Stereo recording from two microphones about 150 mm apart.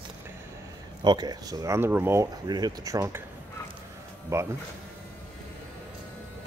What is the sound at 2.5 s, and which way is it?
Speech, 25° right (ahead or behind).